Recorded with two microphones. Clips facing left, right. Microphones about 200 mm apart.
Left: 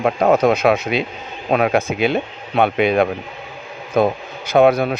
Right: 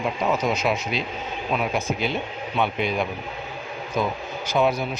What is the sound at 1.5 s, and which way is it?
Speech, 70° left (ahead or behind).